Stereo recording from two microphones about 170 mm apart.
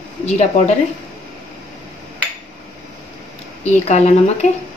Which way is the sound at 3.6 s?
40° left (ahead or behind).